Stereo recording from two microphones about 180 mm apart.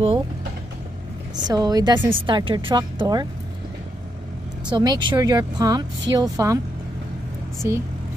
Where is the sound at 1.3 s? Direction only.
20° right (ahead or behind).